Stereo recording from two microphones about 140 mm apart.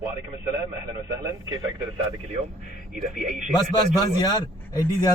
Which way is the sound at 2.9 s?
60° right (ahead or behind).